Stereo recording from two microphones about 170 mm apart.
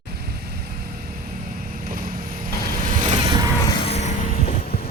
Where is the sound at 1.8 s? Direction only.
55° right (ahead or behind).